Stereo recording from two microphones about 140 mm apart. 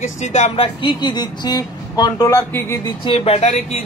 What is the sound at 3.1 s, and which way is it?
Speech, 45° left (ahead or behind).